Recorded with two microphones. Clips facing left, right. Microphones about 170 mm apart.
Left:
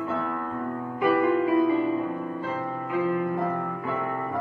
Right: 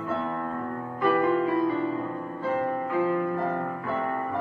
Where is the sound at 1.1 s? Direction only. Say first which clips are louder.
Left 2 dB; 20° left (ahead or behind).